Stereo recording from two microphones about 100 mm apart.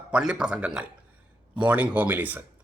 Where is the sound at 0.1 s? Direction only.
10° right (ahead or behind).